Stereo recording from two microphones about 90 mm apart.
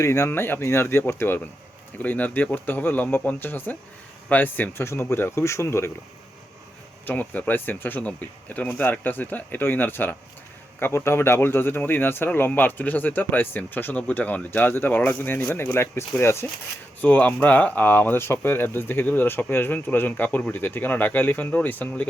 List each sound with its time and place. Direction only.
0.0 s speech: 30° left (ahead or behind)
7.0 s speech: 15° left (ahead or behind)